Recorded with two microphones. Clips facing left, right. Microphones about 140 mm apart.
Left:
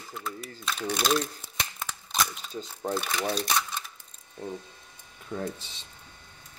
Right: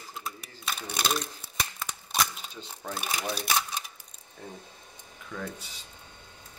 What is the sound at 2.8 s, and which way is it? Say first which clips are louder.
Speech: left 5 dB; 30° left (ahead or behind).